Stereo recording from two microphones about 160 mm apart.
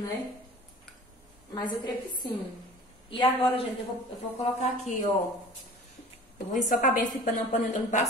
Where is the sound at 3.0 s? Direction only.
35° left (ahead or behind).